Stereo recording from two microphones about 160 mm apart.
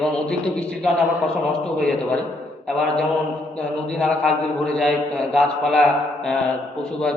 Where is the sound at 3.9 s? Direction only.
5° left (ahead or behind).